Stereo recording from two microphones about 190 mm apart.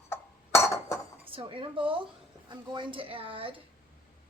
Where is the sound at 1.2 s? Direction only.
30° right (ahead or behind).